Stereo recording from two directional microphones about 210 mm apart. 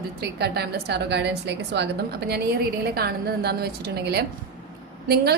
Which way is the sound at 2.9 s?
50° right (ahead or behind).